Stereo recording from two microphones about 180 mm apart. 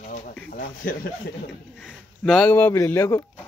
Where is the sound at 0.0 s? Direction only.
45° left (ahead or behind).